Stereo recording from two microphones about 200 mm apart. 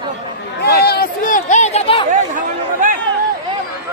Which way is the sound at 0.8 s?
50° left (ahead or behind).